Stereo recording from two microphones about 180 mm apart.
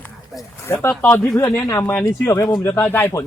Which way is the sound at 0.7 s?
15° left (ahead or behind).